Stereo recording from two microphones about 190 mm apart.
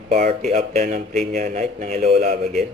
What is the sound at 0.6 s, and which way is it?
Speech, 50° right (ahead or behind).